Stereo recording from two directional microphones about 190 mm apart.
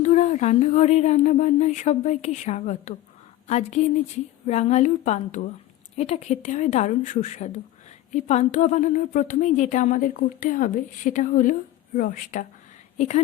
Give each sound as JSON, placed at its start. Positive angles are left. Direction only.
{"t": 0.0, "sound": "speech", "side_deg": 40}